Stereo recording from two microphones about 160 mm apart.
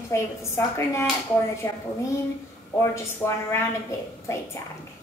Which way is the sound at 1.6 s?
15° left (ahead or behind).